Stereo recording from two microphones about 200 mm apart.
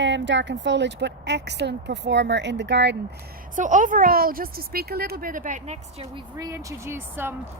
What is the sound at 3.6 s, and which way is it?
A woman's voice, 40° right (ahead or behind).